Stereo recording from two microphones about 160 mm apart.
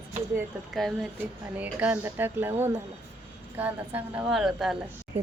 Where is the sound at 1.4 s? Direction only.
10° right (ahead or behind).